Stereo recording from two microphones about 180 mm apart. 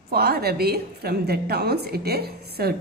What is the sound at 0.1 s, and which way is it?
A woman's voice, 60° right (ahead or behind).